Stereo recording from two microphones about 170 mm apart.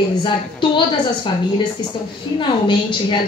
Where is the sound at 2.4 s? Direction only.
30° left (ahead or behind).